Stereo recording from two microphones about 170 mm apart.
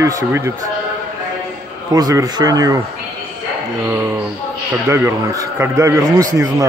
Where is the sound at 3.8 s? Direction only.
15° right (ahead or behind).